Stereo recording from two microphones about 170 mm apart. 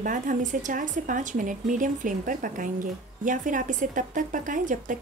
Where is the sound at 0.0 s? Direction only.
50° right (ahead or behind).